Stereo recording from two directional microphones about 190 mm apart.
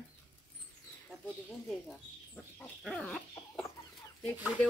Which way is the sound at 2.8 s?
Centre (ahead or behind).